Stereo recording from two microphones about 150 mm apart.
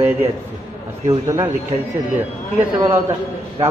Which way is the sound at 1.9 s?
10° right (ahead or behind).